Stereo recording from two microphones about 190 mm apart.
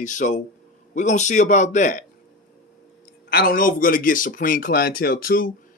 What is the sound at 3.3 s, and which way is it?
A man's voice, 50° left (ahead or behind).